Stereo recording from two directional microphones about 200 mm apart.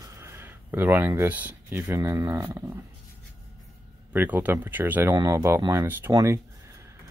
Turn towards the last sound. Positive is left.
turn(degrees=-15)  # may be behind; listen again after turning